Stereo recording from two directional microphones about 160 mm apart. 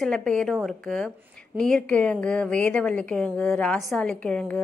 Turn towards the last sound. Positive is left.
turn(degrees=5)  # may be behind; listen again after turning